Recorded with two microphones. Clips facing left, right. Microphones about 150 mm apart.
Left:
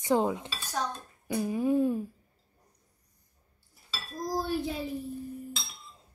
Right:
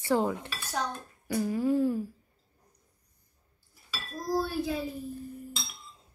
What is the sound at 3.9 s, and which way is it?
Speech, 20° left (ahead or behind).